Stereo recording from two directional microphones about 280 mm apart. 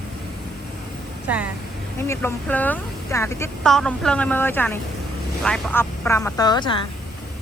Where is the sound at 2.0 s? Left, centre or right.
Centre.